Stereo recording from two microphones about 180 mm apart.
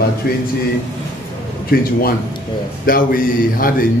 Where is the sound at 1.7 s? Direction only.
55° left (ahead or behind).